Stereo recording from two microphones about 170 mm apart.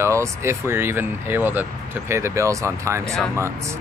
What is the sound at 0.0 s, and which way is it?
Speech, 15° right (ahead or behind).